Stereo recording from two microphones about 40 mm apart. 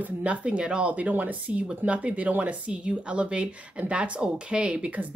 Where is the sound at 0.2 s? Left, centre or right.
Right.